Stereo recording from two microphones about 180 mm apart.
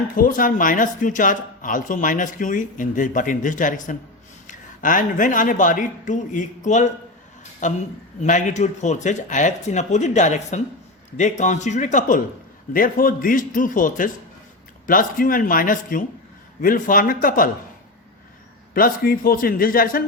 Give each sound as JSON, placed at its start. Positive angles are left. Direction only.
{"t": 0.2, "sound": "speech", "side_deg": 50}
{"t": 18.7, "sound": "speech", "side_deg": 50}